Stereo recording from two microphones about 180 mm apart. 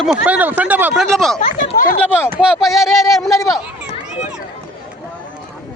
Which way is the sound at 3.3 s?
20° left (ahead or behind).